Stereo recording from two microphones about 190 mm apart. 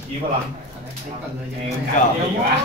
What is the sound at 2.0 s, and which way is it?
Speech, 40° left (ahead or behind).